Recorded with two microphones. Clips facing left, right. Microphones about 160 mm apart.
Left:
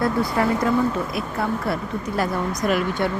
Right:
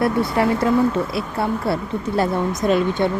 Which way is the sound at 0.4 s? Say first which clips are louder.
Right 3 dB; 25° right (ahead or behind).